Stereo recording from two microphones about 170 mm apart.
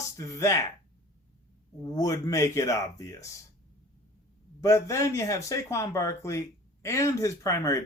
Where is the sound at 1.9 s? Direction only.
20° left (ahead or behind).